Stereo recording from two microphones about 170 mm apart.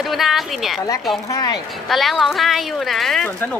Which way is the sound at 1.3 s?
20° left (ahead or behind).